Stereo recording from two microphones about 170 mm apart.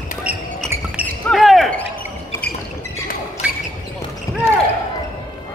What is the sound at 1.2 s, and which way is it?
Basketball bounce, centre (ahead or behind).